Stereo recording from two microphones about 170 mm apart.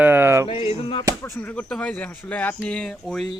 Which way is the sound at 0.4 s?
30° left (ahead or behind).